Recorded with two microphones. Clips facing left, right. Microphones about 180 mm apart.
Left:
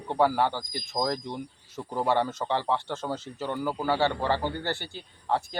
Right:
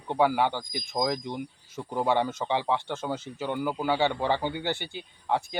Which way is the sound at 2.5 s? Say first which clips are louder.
Right 1 dB; 10° right (ahead or behind).